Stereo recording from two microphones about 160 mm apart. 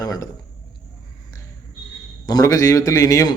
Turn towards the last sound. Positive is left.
turn(degrees=20)  # may be behind; listen again after turning